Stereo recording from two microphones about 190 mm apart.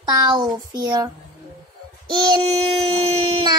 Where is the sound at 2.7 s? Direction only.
30° right (ahead or behind).